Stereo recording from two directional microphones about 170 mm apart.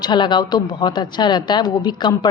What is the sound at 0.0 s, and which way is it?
A woman's voice, 25° left (ahead or behind).